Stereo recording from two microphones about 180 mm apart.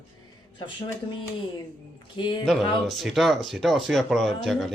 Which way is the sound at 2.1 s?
25° left (ahead or behind).